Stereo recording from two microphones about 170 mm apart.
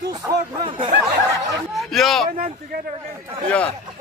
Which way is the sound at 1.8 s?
Centre (ahead or behind).